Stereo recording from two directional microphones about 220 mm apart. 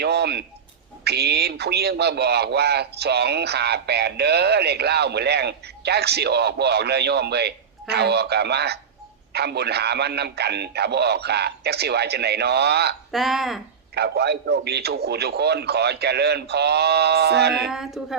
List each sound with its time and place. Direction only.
0.0 s a man's voice: 50° right (ahead or behind)
13.1 s speech: centre (ahead or behind)
13.9 s a man's voice: 50° right (ahead or behind)
17.7 s speech: centre (ahead or behind)